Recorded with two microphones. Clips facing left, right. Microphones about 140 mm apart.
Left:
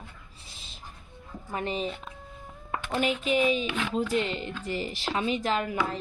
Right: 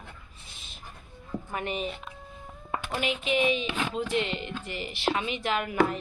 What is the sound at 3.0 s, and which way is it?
Speech, 40° left (ahead or behind).